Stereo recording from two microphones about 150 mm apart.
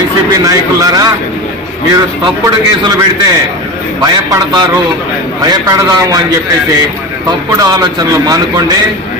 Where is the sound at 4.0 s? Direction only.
25° right (ahead or behind).